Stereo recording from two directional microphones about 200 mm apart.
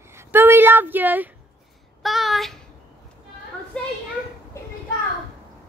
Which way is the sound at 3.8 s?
5° left (ahead or behind).